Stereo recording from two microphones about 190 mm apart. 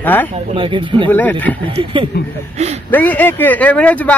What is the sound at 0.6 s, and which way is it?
Speech, 25° right (ahead or behind).